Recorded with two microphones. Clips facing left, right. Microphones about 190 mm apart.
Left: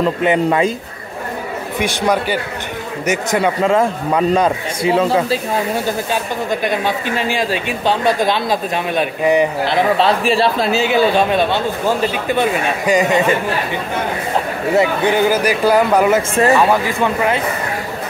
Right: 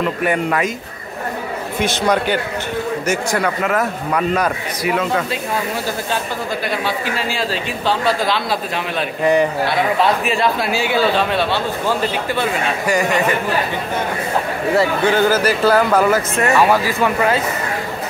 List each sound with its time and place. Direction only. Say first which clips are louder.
0.2 s speech: left 4 dB; 25° left (ahead or behind)
1.8 s speech: even; 15° left (ahead or behind); by 5.4 s 30° left (ahead or behind)
6.6 s speech: left 3 dB; 20° left (ahead or behind)
9.9 s speech: left 3 dB; 30° left (ahead or behind)
14.8 s speech: left 1 dB; 15° left (ahead or behind)